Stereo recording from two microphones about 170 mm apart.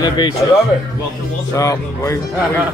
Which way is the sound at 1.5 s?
20° left (ahead or behind).